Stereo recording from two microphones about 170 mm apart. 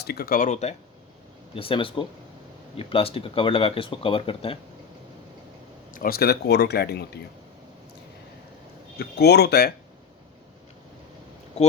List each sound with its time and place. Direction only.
0.0 s speech: 65° left (ahead or behind); by 0.8 s 40° left (ahead or behind)
1.5 s speech: 30° left (ahead or behind)
5.9 s speech: 60° left (ahead or behind)
9.0 s speech: 70° left (ahead or behind)
11.6 s speech: 40° left (ahead or behind)